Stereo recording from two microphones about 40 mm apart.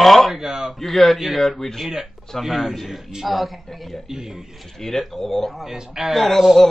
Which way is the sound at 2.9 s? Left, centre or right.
Centre.